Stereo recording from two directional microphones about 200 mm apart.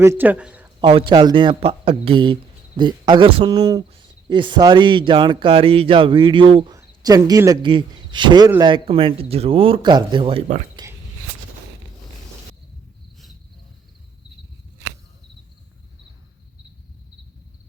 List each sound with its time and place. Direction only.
0.0 s speech: 10° right (ahead or behind)
0.8 s a man's voice: 25° right (ahead or behind)